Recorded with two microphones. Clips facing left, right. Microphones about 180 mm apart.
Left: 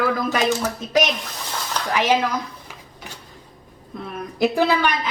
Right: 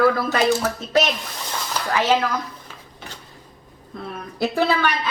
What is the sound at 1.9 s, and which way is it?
Speech, 15° left (ahead or behind).